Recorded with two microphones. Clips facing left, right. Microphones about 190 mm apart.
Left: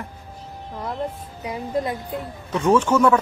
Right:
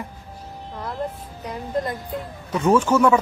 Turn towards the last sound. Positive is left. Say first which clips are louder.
# even
turn(degrees=-10)  # may be behind; listen again after turning